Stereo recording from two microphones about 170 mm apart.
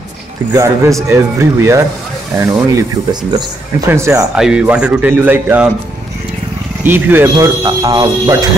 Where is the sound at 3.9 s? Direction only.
15° right (ahead or behind).